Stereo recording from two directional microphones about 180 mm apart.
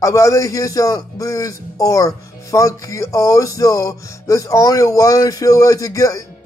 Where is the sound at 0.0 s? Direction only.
20° left (ahead or behind).